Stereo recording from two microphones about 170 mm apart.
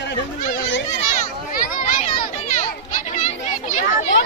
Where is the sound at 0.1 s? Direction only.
90° left.